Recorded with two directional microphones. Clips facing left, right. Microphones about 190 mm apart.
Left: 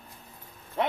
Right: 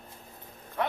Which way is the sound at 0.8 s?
20° left (ahead or behind).